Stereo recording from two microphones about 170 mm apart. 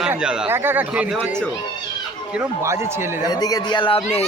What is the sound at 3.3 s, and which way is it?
Speech, 20° left (ahead or behind).